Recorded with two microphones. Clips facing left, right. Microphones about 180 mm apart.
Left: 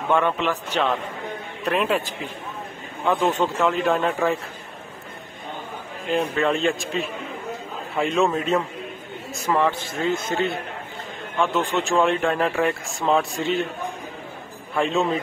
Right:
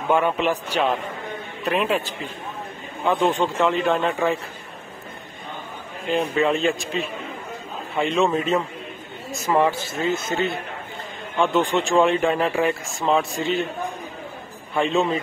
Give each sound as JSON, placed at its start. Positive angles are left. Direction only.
{"t": 0.1, "sound": "speech", "side_deg": -10}
{"t": 1.6, "sound": "a man's voice", "side_deg": 0}
{"t": 3.1, "sound": "speech", "side_deg": 0}
{"t": 6.3, "sound": "speech", "side_deg": 0}
{"t": 9.5, "sound": "speech", "side_deg": -10}
{"t": 14.7, "sound": "speech", "side_deg": 0}